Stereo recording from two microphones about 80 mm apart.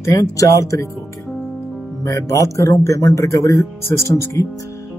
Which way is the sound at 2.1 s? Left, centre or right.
Left.